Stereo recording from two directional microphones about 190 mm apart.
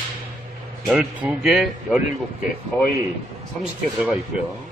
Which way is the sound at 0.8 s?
5° right (ahead or behind).